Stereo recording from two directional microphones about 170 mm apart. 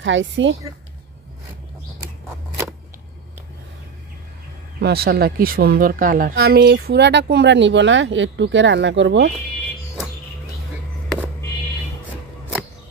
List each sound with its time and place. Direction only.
0.0 s a woman's voice: 90° right
4.7 s speech: 70° right (ahead or behind); by 9.3 s 90° right